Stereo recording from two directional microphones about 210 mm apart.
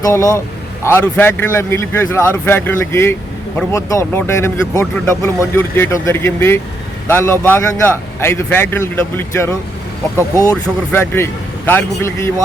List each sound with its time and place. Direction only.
0.0 s speech: 15° left (ahead or behind)